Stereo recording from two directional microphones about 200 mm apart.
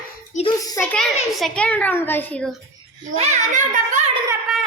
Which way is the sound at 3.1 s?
35° right (ahead or behind).